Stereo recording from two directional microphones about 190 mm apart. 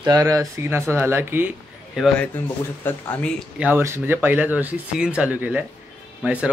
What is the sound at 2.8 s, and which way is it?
Speech, 10° left (ahead or behind).